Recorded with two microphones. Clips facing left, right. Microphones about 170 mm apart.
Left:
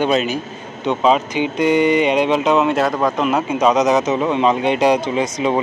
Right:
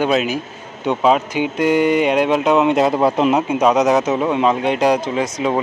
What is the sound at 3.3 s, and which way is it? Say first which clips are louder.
Speech: right 1 dB; 10° right (ahead or behind).